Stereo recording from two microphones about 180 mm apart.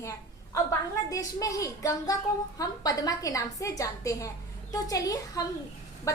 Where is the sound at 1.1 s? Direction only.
20° left (ahead or behind).